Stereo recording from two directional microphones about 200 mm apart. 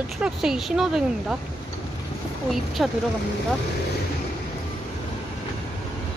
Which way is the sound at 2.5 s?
Centre (ahead or behind).